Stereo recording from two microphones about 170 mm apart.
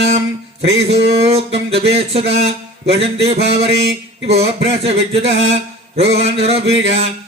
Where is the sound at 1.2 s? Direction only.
35° right (ahead or behind).